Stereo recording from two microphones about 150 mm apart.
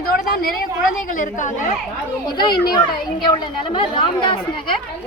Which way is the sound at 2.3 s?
30° left (ahead or behind).